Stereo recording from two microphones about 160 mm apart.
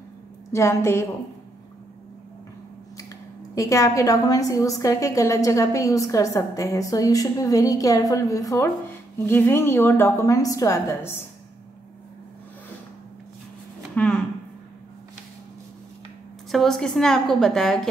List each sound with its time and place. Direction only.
0.5 s a woman's voice: 15° left (ahead or behind)
3.5 s a woman's voice: 20° left (ahead or behind)
13.9 s a sound: 5° left (ahead or behind)
16.5 s a woman's voice: centre (ahead or behind)